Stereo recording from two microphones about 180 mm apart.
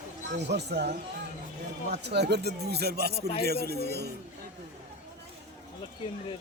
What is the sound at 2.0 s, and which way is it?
Speech, 65° right (ahead or behind).